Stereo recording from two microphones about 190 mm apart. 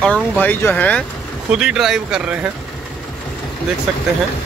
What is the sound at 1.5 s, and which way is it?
Speech, 5° right (ahead or behind).